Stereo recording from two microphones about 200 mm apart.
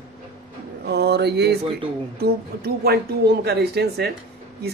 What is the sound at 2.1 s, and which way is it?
Speech, 50° right (ahead or behind).